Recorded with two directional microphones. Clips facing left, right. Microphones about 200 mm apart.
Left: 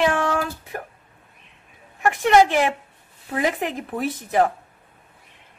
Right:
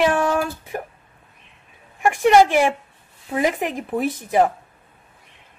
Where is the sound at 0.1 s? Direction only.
15° right (ahead or behind).